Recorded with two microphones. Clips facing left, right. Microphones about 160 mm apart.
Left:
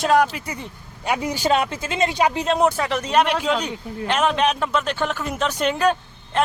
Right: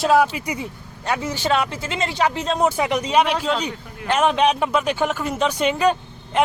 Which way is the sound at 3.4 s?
5° left (ahead or behind).